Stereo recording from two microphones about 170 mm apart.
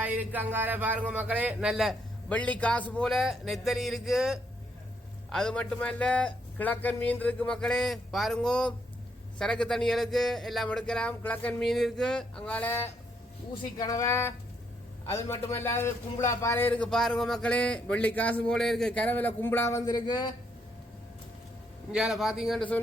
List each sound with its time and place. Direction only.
0.0 s speech: 10° right (ahead or behind); by 12.9 s 10° left (ahead or behind)
13.5 s a man's voice: 20° left (ahead or behind)
21.9 s speech: 5° right (ahead or behind)